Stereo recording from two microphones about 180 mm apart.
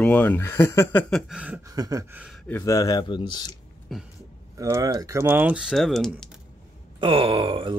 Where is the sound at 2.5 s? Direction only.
20° left (ahead or behind).